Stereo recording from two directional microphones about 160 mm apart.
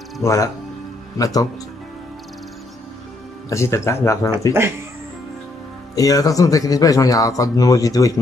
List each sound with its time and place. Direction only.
0.2 s speech: 20° left (ahead or behind)
3.4 s speech: 15° left (ahead or behind)
5.9 s speech: 20° left (ahead or behind)